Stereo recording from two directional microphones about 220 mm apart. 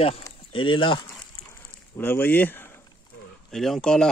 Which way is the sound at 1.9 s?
10° left (ahead or behind).